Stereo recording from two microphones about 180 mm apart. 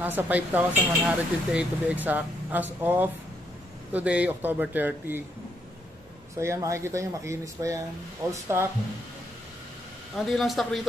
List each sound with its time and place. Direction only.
0.0 s speech: 10° right (ahead or behind)
6.3 s speech: 15° right (ahead or behind)
10.1 s speech: centre (ahead or behind)